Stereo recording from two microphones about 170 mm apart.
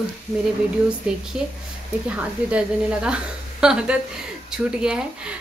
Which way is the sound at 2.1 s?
10° right (ahead or behind).